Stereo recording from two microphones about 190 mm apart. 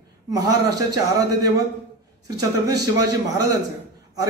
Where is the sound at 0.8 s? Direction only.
20° right (ahead or behind).